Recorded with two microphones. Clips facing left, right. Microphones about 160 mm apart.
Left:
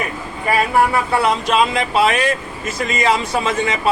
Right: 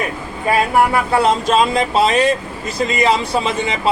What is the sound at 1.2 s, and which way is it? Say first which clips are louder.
Speech: right 2 dB; 40° right (ahead or behind).